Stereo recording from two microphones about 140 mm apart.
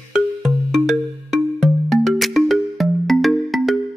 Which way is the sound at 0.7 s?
Centre (ahead or behind).